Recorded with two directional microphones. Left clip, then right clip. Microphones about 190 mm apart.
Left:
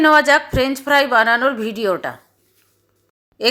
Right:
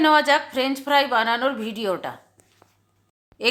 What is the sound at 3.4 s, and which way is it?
Speech, 20° left (ahead or behind).